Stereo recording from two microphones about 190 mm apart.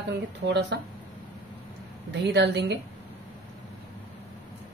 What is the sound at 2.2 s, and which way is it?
Speech, 65° right (ahead or behind).